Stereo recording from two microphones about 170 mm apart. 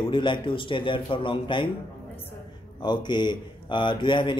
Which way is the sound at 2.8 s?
25° left (ahead or behind).